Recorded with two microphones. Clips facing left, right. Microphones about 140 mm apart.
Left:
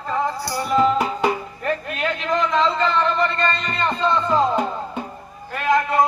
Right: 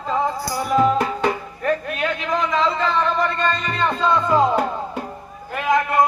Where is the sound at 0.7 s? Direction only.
5° right (ahead or behind).